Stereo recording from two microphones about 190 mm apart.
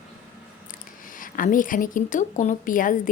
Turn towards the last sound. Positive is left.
turn(degrees=45)  # may be behind; listen again after turning